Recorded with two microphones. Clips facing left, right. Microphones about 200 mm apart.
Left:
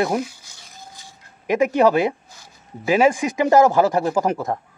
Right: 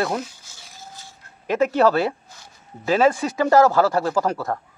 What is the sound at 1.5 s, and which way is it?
Speech, 15° left (ahead or behind).